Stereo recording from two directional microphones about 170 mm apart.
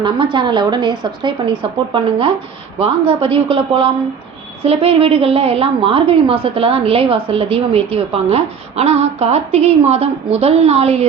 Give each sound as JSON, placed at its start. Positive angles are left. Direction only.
{"t": 0.0, "sound": "a woman's voice", "side_deg": -30}